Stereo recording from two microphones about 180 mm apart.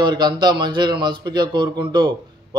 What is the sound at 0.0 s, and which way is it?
Speech, 25° right (ahead or behind).